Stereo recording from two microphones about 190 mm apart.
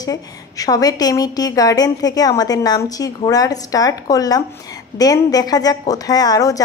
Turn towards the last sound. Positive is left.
turn(degrees=20)  # may be behind; listen again after turning